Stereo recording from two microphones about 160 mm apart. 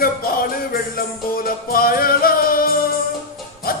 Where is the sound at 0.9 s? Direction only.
65° left (ahead or behind).